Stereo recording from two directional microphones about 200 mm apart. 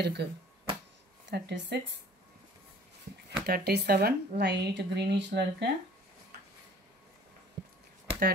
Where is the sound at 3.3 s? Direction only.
50° right (ahead or behind).